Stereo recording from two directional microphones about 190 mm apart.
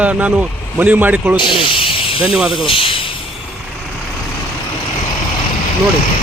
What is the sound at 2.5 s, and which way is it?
Speech, 25° left (ahead or behind).